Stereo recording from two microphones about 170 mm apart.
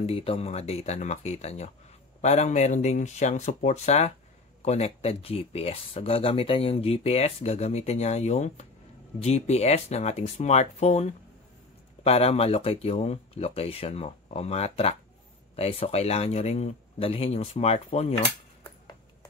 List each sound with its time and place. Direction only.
0.0 s speech: 35° left (ahead or behind)